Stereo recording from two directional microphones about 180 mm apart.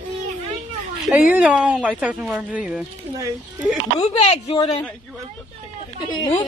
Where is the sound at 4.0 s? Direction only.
35° left (ahead or behind).